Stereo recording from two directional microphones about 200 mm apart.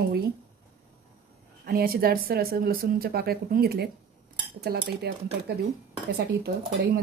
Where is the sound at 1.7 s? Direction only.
50° right (ahead or behind).